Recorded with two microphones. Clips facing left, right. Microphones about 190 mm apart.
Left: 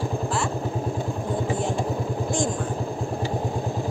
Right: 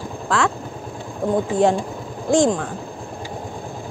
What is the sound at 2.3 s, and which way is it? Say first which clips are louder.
Speech: right 11 dB; 85° right.